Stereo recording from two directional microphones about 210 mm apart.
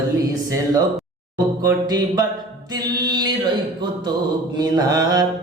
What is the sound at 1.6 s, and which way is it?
Mantra, 20° right (ahead or behind).